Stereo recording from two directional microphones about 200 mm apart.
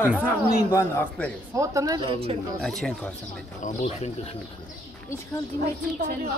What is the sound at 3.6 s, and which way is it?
Speech, 35° left (ahead or behind).